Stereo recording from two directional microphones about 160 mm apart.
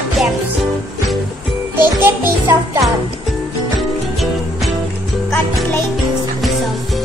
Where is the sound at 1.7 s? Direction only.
15° right (ahead or behind).